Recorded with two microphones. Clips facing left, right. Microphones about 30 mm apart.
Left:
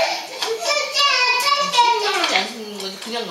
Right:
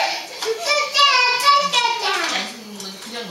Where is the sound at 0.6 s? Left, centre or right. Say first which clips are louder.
Right 3 dB; centre.